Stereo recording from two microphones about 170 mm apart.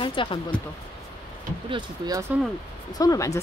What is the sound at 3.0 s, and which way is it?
Speech, 20° left (ahead or behind).